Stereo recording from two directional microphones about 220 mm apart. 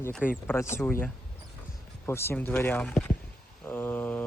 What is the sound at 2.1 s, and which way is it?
Speech, 10° left (ahead or behind).